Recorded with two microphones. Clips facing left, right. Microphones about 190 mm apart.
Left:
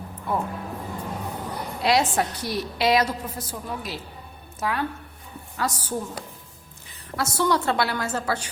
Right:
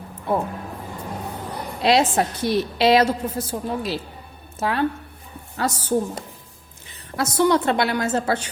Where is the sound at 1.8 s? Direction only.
25° right (ahead or behind).